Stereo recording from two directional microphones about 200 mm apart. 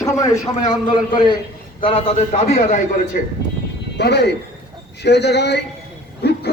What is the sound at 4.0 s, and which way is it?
A man's voice, 55° left (ahead or behind).